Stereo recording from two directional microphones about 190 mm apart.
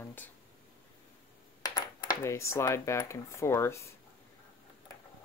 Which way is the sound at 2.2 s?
15° left (ahead or behind).